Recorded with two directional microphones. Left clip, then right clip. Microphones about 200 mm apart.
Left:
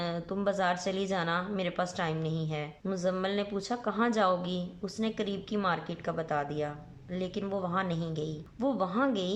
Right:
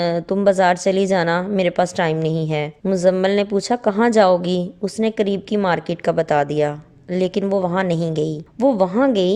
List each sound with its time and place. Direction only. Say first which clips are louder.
0.0 s a woman's voice: right 15 dB; 40° right (ahead or behind)